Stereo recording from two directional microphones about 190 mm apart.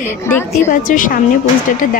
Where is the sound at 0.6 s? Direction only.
45° left (ahead or behind).